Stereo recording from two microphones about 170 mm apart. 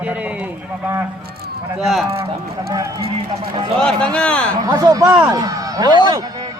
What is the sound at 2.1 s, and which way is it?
Speech, 35° right (ahead or behind).